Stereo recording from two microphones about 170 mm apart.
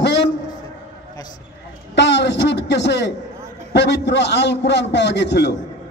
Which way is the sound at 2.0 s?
90° left.